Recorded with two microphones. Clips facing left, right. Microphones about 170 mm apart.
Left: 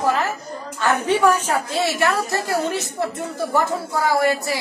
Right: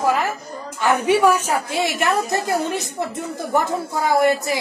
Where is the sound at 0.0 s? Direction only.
15° right (ahead or behind).